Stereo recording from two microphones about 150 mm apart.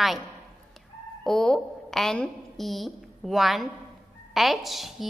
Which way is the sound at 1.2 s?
5° left (ahead or behind).